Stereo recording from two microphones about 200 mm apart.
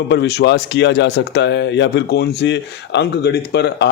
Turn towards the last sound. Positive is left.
turn(degrees=55)  # may be behind; listen again after turning